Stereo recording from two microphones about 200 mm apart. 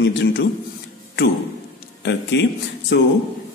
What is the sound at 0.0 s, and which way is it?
Speech, 55° left (ahead or behind).